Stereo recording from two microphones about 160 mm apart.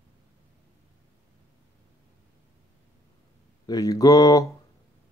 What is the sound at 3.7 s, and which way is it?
Speech, 25° left (ahead or behind).